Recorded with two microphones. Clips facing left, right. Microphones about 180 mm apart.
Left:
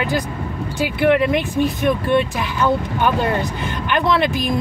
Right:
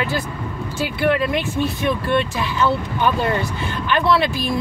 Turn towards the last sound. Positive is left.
turn(degrees=20)  # may be behind; listen again after turning